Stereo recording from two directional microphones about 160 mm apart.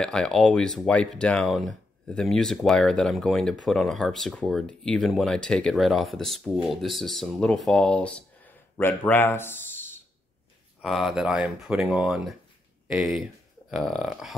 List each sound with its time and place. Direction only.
0.0 s a man's voice: 5° left (ahead or behind)
10.8 s speech: centre (ahead or behind)